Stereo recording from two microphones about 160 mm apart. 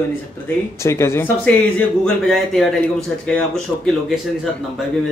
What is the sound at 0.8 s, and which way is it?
Speech, 15° left (ahead or behind).